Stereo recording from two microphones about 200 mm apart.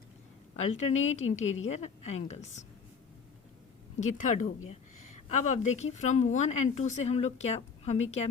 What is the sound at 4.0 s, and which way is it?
Speech, 40° left (ahead or behind).